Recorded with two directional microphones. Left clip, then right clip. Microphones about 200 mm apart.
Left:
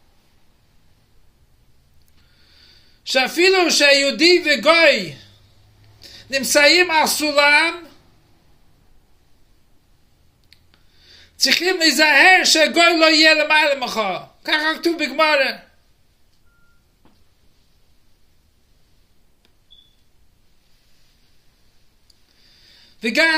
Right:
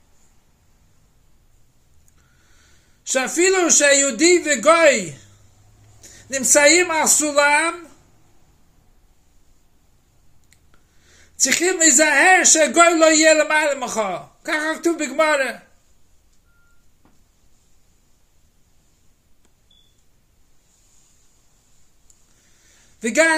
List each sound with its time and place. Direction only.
3.0 s a sound: 15° right (ahead or behind)
3.3 s a man's voice: 15° right (ahead or behind)
6.3 s a man's voice: 15° right (ahead or behind)
10.5 s a sound: 15° right (ahead or behind)
12.5 s a man's voice: 15° right (ahead or behind)
22.9 s a man's voice: 10° right (ahead or behind)